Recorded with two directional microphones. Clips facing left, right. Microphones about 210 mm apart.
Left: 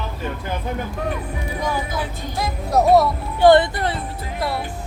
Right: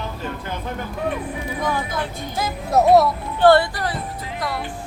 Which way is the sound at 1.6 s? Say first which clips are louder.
Even; 10° left (ahead or behind).